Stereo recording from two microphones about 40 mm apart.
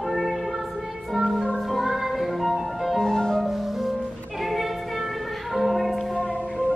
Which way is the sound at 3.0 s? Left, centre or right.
Centre.